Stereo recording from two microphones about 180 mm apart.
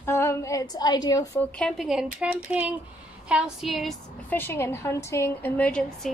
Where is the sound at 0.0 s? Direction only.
15° left (ahead or behind).